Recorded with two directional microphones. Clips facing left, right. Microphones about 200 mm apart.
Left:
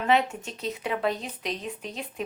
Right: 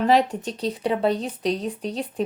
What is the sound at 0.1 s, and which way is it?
Speech, 35° right (ahead or behind).